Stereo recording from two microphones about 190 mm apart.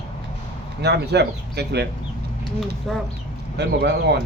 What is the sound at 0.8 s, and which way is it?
Speech, 60° right (ahead or behind).